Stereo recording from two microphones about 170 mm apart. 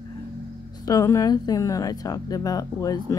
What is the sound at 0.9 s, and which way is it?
Speech, 20° left (ahead or behind).